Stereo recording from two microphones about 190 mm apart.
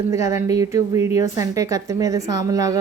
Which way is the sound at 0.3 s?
15° right (ahead or behind).